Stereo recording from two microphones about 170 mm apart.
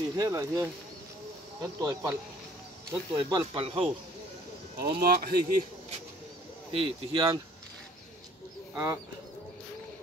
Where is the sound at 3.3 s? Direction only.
30° right (ahead or behind).